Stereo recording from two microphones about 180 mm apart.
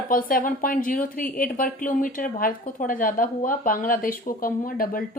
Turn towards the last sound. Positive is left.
turn(degrees=50)  # may be behind; listen again after turning